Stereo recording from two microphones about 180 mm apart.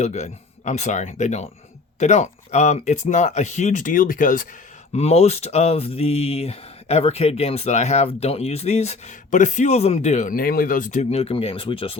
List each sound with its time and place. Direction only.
0.0 s speech: 40° left (ahead or behind)
4.9 s speech: 35° left (ahead or behind)